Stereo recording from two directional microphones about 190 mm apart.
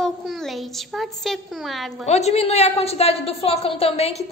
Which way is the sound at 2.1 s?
35° left (ahead or behind).